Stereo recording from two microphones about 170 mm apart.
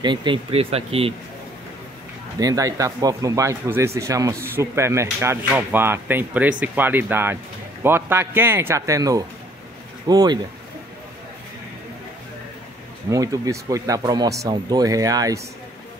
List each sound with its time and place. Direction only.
0.0 s speech: 25° right (ahead or behind)
2.4 s speech: 20° right (ahead or behind)
13.1 s speech: 20° right (ahead or behind)